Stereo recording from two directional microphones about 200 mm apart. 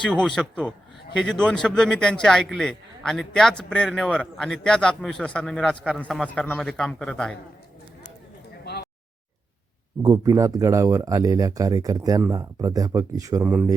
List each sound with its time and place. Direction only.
0.0 s a man's voice: 5° left (ahead or behind)
8.6 s a sound: 55° left (ahead or behind)
10.0 s speech: 15° right (ahead or behind)